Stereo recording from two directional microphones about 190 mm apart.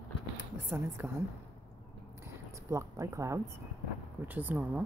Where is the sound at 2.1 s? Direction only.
15° right (ahead or behind).